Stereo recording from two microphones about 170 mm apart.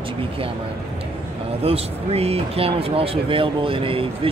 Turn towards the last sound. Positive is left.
turn(degrees=-30)  # may be behind; listen again after turning